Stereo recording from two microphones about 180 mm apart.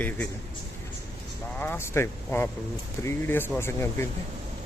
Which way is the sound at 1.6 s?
10° left (ahead or behind).